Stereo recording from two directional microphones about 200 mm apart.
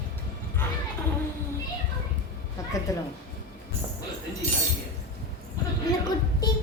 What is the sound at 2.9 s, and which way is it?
Speech, 15° left (ahead or behind).